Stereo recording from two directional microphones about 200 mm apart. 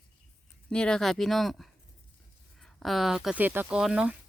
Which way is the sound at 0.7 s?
5° left (ahead or behind).